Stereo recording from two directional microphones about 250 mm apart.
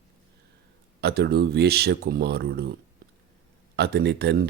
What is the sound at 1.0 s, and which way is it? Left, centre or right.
Speech, right.